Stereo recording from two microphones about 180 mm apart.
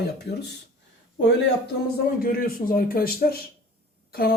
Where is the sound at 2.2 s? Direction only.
55° left (ahead or behind).